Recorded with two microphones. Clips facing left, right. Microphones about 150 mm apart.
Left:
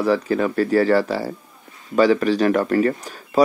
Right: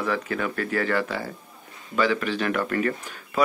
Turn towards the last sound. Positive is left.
turn(degrees=35)  # may be behind; listen again after turning